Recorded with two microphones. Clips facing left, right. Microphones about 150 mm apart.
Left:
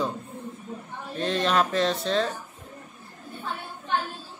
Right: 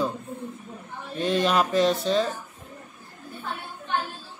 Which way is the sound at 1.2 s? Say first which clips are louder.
Right 1 dB; 5° right (ahead or behind).